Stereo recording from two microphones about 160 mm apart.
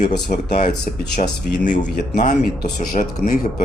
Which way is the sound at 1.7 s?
50° left (ahead or behind).